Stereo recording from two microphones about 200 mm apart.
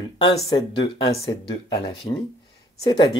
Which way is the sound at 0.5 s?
25° left (ahead or behind).